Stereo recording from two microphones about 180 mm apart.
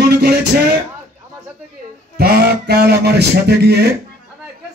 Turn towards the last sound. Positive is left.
turn(degrees=-65)  # may be behind; listen again after turning